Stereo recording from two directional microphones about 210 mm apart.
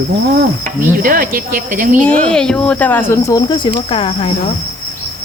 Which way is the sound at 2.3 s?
5° left (ahead or behind).